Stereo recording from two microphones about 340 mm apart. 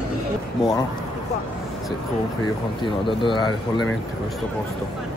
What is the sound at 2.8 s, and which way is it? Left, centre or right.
Speech, centre.